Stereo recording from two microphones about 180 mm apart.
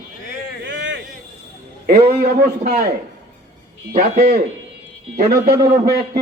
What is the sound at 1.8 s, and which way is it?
A man's voice, 55° right (ahead or behind).